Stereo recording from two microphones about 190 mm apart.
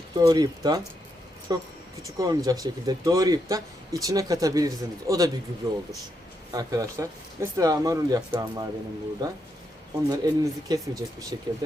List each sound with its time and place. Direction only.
0.1 s speech: 20° right (ahead or behind)